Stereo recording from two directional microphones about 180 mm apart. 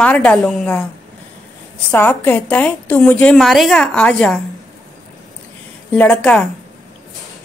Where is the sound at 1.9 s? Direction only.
10° left (ahead or behind).